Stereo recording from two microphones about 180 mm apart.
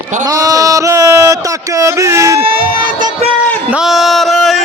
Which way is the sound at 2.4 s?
30° right (ahead or behind).